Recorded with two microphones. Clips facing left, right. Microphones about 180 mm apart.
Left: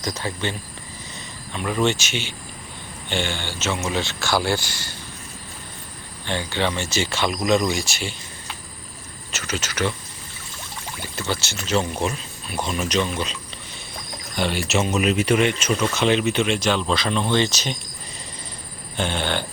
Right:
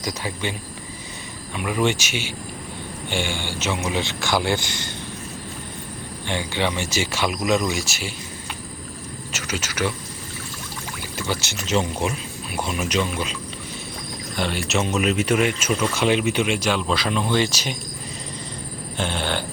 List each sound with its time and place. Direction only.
0.0 s speech: 10° right (ahead or behind)
1.5 s speech: 10° right (ahead or behind)
6.2 s speech: 15° right (ahead or behind)
11.2 s speech: 10° right (ahead or behind)
14.3 s speech: centre (ahead or behind)
18.9 s speech: 5° right (ahead or behind)